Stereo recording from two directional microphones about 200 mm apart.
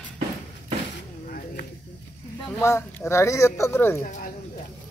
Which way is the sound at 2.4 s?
10° left (ahead or behind).